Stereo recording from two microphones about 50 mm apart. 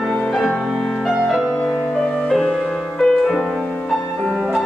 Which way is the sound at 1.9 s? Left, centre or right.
Centre.